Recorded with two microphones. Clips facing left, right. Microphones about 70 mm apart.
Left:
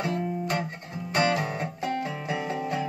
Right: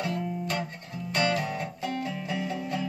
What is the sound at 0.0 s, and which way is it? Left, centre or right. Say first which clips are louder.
Music: left 2 dB; left.